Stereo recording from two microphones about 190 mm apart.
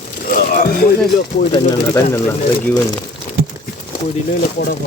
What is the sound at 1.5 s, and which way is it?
Speech, 20° left (ahead or behind).